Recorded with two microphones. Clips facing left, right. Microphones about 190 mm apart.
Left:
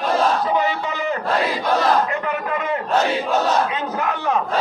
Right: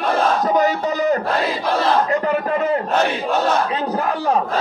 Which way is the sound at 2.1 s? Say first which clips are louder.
Right 5 dB; 35° right (ahead or behind).